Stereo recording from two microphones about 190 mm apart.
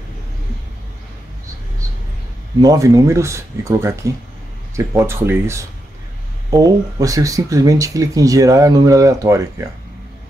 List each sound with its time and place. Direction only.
2.6 s speech: 20° right (ahead or behind)